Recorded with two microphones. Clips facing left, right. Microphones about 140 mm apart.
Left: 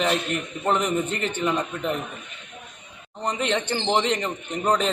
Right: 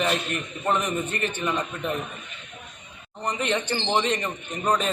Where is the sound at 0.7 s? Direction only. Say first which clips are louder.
Left 2 dB; 15° left (ahead or behind).